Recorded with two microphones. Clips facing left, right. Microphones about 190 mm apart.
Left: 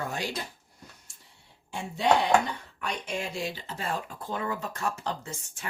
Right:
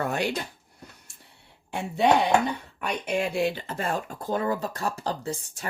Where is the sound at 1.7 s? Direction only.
60° right (ahead or behind).